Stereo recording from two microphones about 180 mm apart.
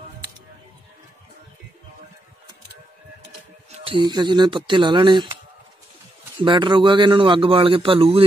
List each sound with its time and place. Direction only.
3.7 s a man's voice: 30° right (ahead or behind)
6.4 s a man's voice: 25° right (ahead or behind)